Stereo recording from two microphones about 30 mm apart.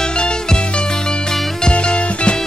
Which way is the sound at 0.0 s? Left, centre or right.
Left.